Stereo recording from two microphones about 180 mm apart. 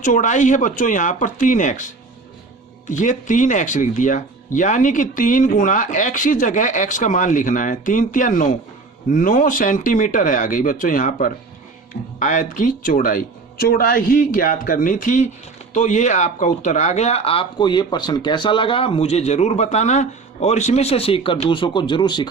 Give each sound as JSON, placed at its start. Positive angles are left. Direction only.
{"t": 0.0, "sound": "speech", "side_deg": 45}